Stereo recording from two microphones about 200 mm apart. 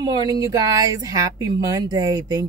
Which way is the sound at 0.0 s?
20° right (ahead or behind).